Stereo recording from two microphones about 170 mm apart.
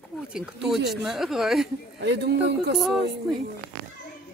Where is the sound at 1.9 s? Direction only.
85° right.